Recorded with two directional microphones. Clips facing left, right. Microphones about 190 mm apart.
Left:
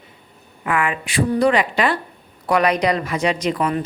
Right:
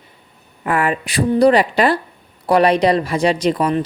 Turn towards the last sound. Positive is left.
turn(degrees=-35)  # may be behind; listen again after turning